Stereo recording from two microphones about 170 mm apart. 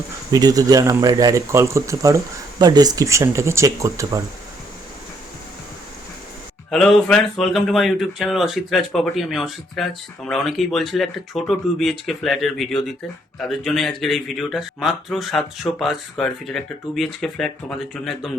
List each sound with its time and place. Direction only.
0.3 s speech: 20° right (ahead or behind)
6.7 s speech: 5° left (ahead or behind)